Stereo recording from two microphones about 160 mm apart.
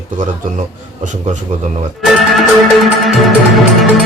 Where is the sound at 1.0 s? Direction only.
50° right (ahead or behind).